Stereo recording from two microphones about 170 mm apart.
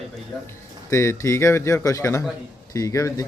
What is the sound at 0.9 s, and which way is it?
A man's voice, 15° left (ahead or behind).